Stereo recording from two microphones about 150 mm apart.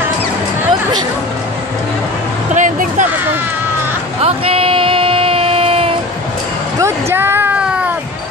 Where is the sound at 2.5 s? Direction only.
60° right (ahead or behind).